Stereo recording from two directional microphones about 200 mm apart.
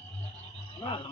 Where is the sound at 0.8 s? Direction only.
25° left (ahead or behind).